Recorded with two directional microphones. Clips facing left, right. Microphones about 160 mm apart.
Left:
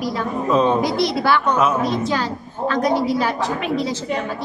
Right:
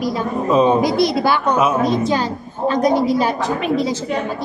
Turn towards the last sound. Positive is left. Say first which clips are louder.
# right 3 dB
turn(degrees=-15)  # may be behind; listen again after turning